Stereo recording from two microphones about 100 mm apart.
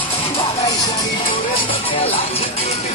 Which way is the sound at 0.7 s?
40° left (ahead or behind).